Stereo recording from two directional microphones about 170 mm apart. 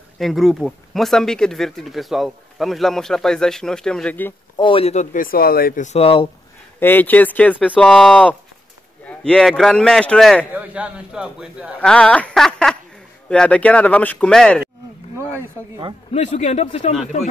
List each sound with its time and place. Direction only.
0.2 s speech: centre (ahead or behind)
4.6 s speech: 30° left (ahead or behind)
5.1 s speech: 55° left (ahead or behind)
5.9 s speech: 35° left (ahead or behind)
6.8 s speech: 10° left (ahead or behind)
10.5 s speech: 10° right (ahead or behind)
11.8 s speech: 5° left (ahead or behind)
15.1 s speech: 15° right (ahead or behind)
16.1 s speech: 45° left (ahead or behind)